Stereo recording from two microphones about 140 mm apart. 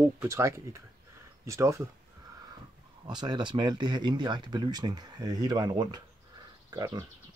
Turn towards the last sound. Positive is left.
turn(degrees=-25)  # may be behind; listen again after turning